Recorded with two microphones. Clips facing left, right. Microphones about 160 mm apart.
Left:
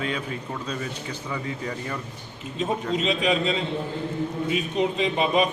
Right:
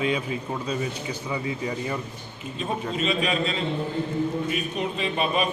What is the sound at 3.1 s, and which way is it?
Speech, 90° left.